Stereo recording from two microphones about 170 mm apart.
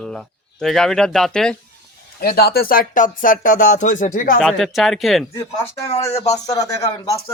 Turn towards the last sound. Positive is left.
turn(degrees=20)  # may be behind; listen again after turning